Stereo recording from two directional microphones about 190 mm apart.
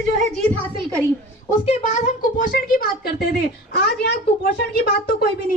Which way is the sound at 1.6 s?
35° left (ahead or behind).